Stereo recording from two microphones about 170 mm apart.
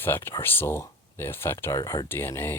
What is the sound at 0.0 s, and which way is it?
Speech, 15° left (ahead or behind).